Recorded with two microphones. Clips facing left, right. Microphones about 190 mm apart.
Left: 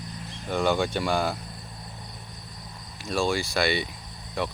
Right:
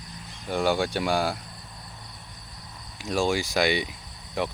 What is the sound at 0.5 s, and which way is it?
Speech, 10° right (ahead or behind).